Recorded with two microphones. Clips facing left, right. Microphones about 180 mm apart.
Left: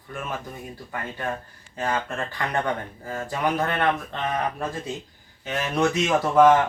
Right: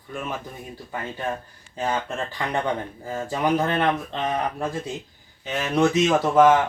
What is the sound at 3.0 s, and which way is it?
Speech, 20° right (ahead or behind).